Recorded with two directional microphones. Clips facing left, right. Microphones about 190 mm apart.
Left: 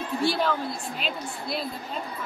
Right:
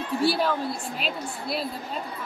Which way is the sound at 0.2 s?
10° right (ahead or behind).